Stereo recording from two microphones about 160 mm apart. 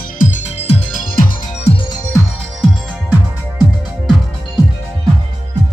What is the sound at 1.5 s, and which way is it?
Music, 40° left (ahead or behind).